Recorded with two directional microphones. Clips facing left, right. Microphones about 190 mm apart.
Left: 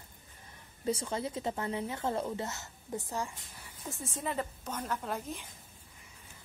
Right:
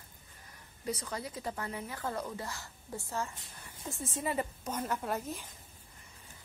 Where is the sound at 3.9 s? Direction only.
Centre (ahead or behind).